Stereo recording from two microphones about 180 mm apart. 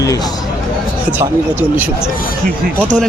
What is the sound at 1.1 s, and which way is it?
Speech, 10° right (ahead or behind).